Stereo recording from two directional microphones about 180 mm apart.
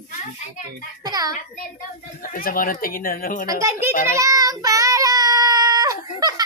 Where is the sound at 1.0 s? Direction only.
20° right (ahead or behind).